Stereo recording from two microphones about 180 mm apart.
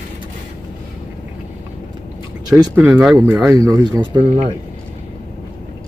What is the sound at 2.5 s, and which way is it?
Speech, 15° right (ahead or behind).